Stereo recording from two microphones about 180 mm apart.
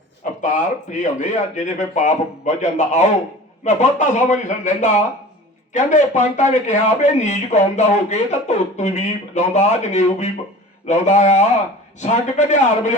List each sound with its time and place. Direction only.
0.4 s a man's voice: 45° left (ahead or behind)